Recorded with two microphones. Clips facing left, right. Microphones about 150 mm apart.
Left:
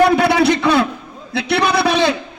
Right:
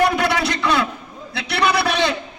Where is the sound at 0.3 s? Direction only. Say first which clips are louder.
Left 6 dB; 30° left (ahead or behind).